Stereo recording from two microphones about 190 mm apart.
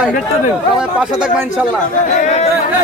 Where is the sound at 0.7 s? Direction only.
5° right (ahead or behind).